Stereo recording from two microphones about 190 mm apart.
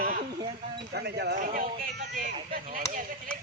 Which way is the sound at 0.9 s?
60° right (ahead or behind).